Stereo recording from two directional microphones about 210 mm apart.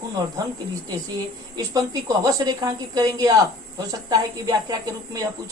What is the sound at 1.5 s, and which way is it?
Speech, 20° right (ahead or behind).